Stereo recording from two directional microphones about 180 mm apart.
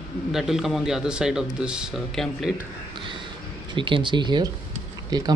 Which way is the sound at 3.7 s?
25° right (ahead or behind).